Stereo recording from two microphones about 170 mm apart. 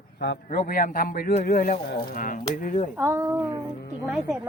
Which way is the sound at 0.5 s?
50° left (ahead or behind).